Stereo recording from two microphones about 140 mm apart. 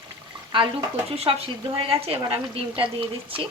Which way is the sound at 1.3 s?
40° right (ahead or behind).